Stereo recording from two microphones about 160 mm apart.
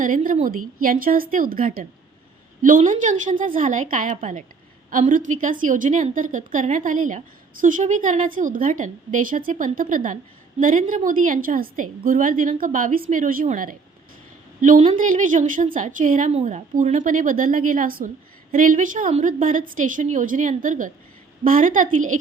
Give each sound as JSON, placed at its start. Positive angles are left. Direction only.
{"t": 0.0, "sound": "a woman's voice", "side_deg": -55}
{"t": 16.3, "sound": "a woman's voice", "side_deg": -45}